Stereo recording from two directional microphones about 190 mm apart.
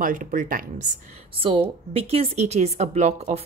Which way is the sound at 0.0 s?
45° right (ahead or behind).